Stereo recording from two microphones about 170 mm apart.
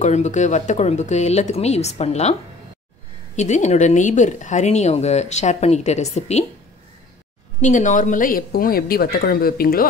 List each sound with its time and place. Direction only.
0.0 s speech: 45° left (ahead or behind)
3.3 s a woman's voice: 45° left (ahead or behind)
7.6 s speech: 45° left (ahead or behind)